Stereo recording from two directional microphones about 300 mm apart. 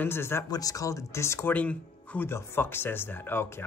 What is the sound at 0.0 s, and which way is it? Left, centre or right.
A man's voice, centre.